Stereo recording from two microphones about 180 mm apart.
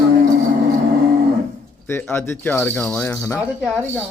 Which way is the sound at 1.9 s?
15° left (ahead or behind).